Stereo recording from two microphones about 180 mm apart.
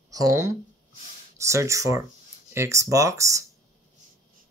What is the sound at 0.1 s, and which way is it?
Speech, 20° right (ahead or behind).